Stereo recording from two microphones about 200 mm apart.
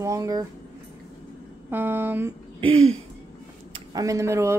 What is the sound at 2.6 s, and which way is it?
Throat clearing, 90° right.